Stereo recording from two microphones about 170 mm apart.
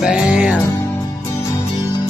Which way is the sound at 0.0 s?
5° right (ahead or behind).